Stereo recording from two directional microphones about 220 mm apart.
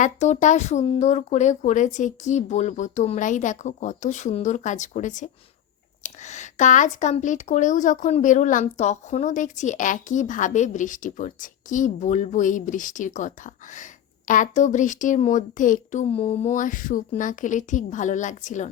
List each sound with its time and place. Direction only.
0.0 s speech: 35° left (ahead or behind)